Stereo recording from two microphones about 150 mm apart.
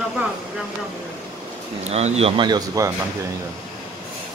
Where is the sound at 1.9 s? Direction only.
45° right (ahead or behind).